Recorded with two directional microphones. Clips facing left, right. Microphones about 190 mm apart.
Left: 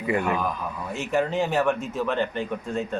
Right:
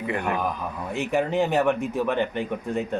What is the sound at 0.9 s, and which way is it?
A man's voice, 15° right (ahead or behind).